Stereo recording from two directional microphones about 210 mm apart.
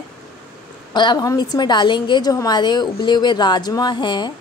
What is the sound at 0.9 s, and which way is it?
A woman's voice, 20° left (ahead or behind).